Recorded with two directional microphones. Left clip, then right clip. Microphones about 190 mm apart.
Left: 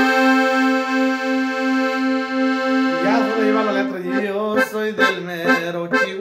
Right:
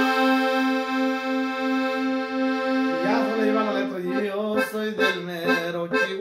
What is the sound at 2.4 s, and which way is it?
Music, 15° left (ahead or behind).